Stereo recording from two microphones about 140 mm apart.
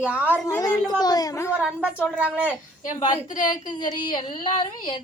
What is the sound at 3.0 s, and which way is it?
A woman's voice, 30° left (ahead or behind).